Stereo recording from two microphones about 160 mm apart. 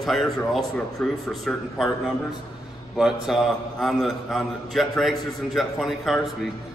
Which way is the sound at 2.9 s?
Centre (ahead or behind).